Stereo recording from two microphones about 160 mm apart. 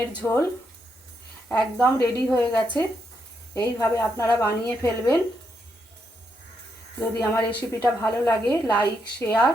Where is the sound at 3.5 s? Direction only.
20° left (ahead or behind).